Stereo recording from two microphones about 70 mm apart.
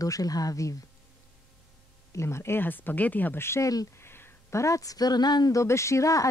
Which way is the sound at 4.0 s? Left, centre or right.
Left.